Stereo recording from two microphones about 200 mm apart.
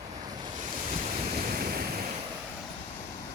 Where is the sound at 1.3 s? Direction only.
50° right (ahead or behind).